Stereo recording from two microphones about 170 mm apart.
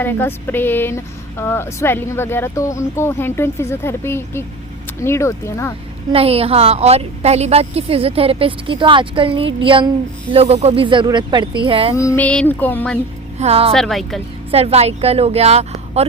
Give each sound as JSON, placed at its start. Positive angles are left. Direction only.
{"t": 0.0, "sound": "speech", "side_deg": 10}
{"t": 6.1, "sound": "a woman's voice", "side_deg": -35}
{"t": 11.9, "sound": "speech", "side_deg": 15}
{"t": 13.4, "sound": "a woman's voice", "side_deg": -35}
{"t": 13.7, "sound": "speech", "side_deg": 0}
{"t": 14.5, "sound": "a woman's voice", "side_deg": -35}